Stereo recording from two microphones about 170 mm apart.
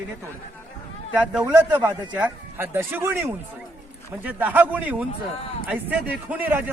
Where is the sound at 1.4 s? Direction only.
25° right (ahead or behind).